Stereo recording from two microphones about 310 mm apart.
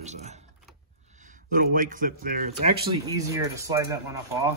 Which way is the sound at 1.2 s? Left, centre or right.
Right.